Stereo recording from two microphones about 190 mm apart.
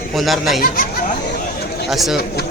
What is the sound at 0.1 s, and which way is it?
Speech, centre (ahead or behind).